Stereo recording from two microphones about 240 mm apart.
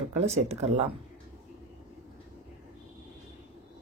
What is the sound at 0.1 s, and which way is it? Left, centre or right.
Speech, right.